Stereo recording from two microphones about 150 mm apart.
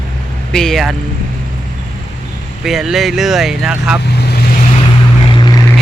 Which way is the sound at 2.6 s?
Centre (ahead or behind).